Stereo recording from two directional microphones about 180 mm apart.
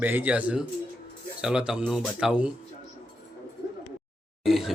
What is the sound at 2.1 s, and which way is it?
Speech, 5° right (ahead or behind).